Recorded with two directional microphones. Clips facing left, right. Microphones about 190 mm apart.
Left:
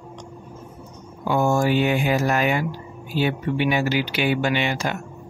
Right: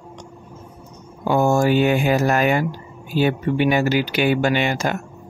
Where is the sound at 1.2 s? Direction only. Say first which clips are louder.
Right 3 dB; 45° right (ahead or behind).